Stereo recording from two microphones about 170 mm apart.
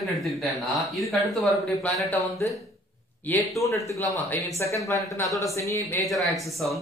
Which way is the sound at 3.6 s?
20° left (ahead or behind).